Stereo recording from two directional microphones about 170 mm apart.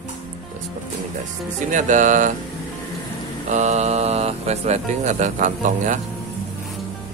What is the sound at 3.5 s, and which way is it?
Speech, 45° right (ahead or behind).